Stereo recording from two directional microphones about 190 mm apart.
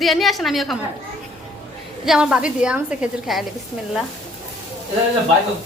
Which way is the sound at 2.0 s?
5° right (ahead or behind).